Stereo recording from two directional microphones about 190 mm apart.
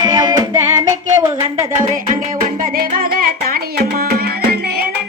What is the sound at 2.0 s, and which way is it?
Music, 40° right (ahead or behind).